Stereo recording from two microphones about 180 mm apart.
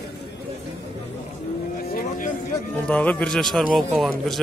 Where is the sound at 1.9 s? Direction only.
50° left (ahead or behind).